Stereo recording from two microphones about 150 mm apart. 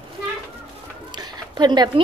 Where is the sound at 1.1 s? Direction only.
30° right (ahead or behind).